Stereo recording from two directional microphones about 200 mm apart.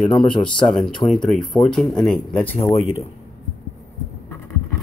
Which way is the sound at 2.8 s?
30° left (ahead or behind).